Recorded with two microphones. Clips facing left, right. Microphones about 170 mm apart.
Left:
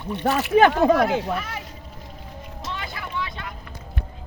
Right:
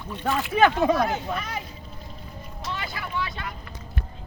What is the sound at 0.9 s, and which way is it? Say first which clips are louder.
Speech: left 4 dB; 90° left.